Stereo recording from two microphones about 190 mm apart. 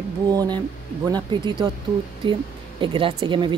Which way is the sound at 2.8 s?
25° right (ahead or behind).